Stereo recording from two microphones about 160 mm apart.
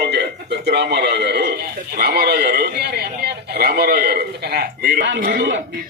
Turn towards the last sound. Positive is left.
turn(degrees=-80)